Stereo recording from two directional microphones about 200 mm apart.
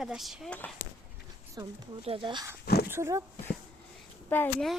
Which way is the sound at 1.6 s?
20° right (ahead or behind).